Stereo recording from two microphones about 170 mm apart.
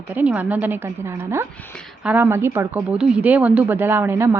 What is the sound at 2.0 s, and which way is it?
A woman's voice, 10° right (ahead or behind).